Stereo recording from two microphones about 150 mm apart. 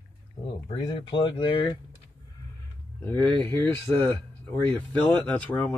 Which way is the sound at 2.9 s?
10° left (ahead or behind).